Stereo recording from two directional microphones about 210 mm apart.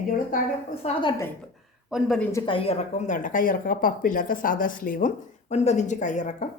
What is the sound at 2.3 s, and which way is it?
Speech, 25° left (ahead or behind).